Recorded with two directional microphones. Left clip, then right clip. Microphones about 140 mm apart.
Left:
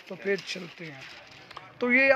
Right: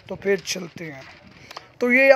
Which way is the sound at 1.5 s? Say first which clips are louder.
Right 5 dB; 25° right (ahead or behind).